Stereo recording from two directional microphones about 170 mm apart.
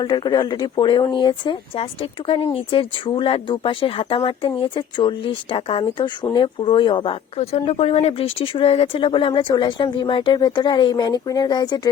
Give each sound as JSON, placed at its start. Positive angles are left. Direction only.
{"t": 0.0, "sound": "speech", "side_deg": 25}